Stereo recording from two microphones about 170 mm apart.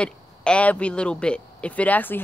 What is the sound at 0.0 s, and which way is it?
Speech, 5° left (ahead or behind).